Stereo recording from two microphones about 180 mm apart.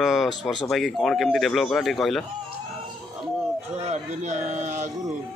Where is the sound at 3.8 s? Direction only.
40° right (ahead or behind).